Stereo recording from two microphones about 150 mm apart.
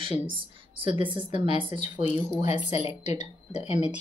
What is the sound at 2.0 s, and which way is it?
Speech, 50° left (ahead or behind).